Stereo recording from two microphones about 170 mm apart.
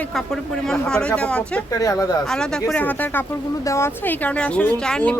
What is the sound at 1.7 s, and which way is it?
Speech, 20° left (ahead or behind).